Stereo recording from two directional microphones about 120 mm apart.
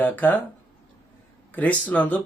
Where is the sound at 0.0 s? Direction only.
15° left (ahead or behind).